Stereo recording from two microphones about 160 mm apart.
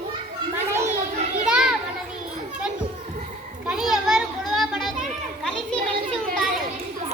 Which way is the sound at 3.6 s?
5° right (ahead or behind).